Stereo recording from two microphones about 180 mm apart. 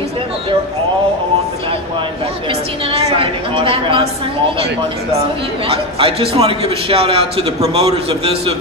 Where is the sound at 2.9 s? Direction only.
30° right (ahead or behind).